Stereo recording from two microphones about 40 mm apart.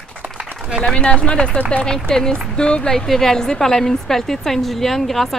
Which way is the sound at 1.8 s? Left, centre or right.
Centre.